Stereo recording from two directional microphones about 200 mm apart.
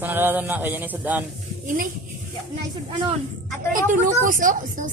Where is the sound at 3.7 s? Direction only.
40° right (ahead or behind).